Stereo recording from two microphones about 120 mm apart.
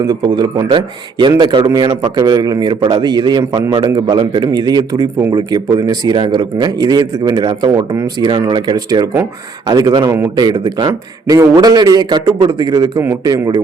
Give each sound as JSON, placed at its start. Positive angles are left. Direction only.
{"t": 0.0, "sound": "a man's voice", "side_deg": -35}